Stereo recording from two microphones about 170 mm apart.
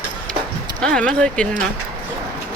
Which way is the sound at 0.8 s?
5° left (ahead or behind).